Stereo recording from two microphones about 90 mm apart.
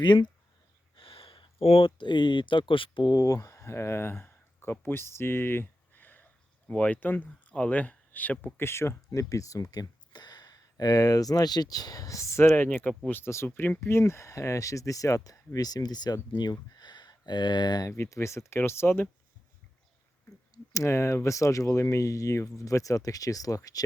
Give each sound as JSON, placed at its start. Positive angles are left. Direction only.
{"t": 0.0, "sound": "speech", "side_deg": 60}
{"t": 0.9, "sound": "speech", "side_deg": 85}
{"t": 17.8, "sound": "speech", "side_deg": 35}
{"t": 20.7, "sound": "speech", "side_deg": 35}